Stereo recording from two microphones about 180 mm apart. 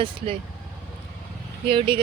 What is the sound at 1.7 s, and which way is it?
Speech, 30° right (ahead or behind).